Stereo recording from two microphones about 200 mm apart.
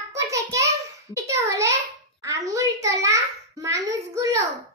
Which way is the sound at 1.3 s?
15° right (ahead or behind).